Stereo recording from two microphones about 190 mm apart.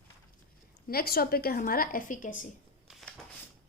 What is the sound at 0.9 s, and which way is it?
A woman's voice, 55° left (ahead or behind).